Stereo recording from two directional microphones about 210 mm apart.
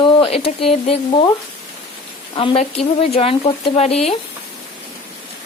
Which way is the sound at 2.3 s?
25° left (ahead or behind).